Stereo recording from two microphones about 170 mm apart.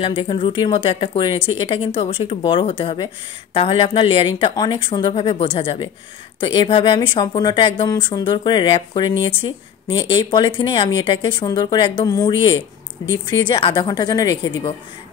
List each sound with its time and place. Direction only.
0.0 s a woman's voice: 30° left (ahead or behind)